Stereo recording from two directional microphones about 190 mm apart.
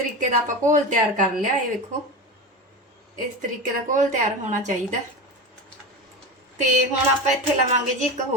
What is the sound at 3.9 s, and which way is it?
Speech, 40° right (ahead or behind).